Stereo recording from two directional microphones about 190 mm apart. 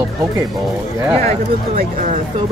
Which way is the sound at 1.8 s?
40° right (ahead or behind).